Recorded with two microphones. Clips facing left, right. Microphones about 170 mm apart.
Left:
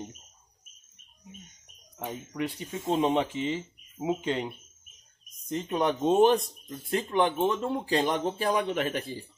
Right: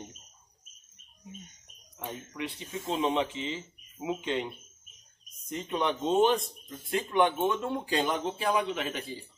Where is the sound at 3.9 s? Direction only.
35° left (ahead or behind).